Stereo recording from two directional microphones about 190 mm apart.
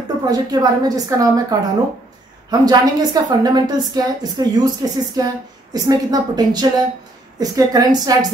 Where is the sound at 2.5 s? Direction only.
20° right (ahead or behind).